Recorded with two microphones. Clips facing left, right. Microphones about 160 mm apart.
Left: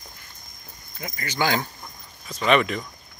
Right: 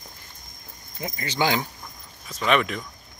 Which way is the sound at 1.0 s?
25° right (ahead or behind).